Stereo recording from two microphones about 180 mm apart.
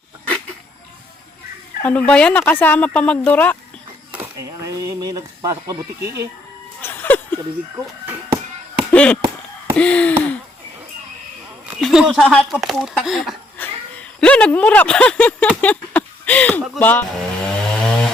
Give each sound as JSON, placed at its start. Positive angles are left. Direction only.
{"t": 1.8, "sound": "speech", "side_deg": 10}
{"t": 4.1, "sound": "a sound", "side_deg": -15}
{"t": 6.8, "sound": "a sound", "side_deg": 10}
{"t": 8.9, "sound": "chop", "side_deg": 5}
{"t": 9.7, "sound": "speech", "side_deg": 5}
{"t": 11.7, "sound": "speech", "side_deg": 0}